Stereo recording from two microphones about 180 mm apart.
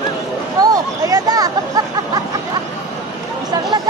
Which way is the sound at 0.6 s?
20° right (ahead or behind).